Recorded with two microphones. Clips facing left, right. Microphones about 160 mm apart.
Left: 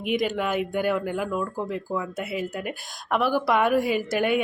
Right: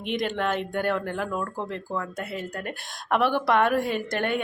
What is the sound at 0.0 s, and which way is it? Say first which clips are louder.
Speech: left 2 dB; 5° left (ahead or behind).